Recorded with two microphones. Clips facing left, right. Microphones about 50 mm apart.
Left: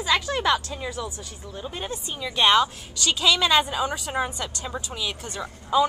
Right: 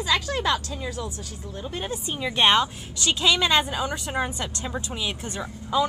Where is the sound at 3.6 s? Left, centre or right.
Centre.